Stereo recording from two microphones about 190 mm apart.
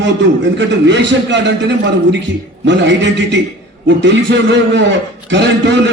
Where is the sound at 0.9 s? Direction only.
65° right (ahead or behind).